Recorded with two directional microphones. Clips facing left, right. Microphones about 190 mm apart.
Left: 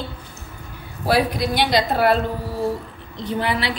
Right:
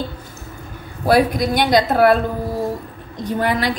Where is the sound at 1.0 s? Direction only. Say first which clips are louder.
Right 4 dB; 45° right (ahead or behind).